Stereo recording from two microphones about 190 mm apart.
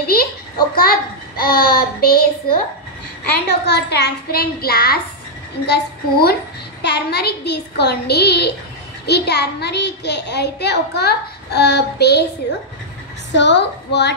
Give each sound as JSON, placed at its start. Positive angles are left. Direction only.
{"t": 0.0, "sound": "a sound", "side_deg": 55}
{"t": 0.7, "sound": "a woman's voice", "side_deg": 50}
{"t": 3.3, "sound": "a woman's voice", "side_deg": 60}
{"t": 13.3, "sound": "a woman's voice", "side_deg": 70}